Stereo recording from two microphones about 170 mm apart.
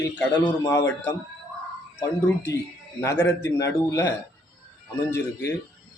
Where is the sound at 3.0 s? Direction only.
15° left (ahead or behind).